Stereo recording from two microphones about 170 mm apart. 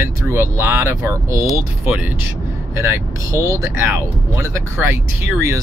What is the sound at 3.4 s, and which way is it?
Speech, 20° right (ahead or behind).